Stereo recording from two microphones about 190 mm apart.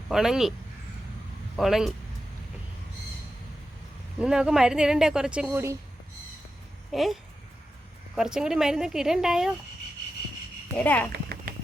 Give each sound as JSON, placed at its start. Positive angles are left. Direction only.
{"t": 0.1, "sound": "speech", "side_deg": 0}
{"t": 1.5, "sound": "speech", "side_deg": 0}
{"t": 4.2, "sound": "speech", "side_deg": -5}
{"t": 6.9, "sound": "speech", "side_deg": 0}
{"t": 10.8, "sound": "speech", "side_deg": 10}
{"t": 11.1, "sound": "a sound", "side_deg": -60}